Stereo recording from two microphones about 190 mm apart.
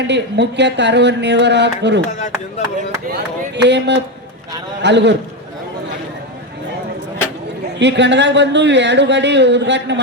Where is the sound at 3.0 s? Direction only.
60° right (ahead or behind).